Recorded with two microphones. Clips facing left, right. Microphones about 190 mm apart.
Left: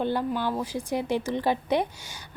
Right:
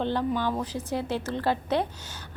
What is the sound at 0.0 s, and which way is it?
A woman's voice, 10° left (ahead or behind).